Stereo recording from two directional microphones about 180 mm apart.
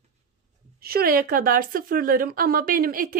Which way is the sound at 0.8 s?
60° right (ahead or behind).